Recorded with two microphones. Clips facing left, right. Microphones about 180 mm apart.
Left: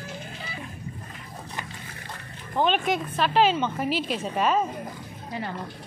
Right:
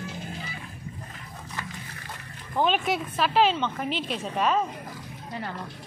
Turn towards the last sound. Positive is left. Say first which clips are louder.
# left 1 dB
turn(degrees=5)  # may be behind; listen again after turning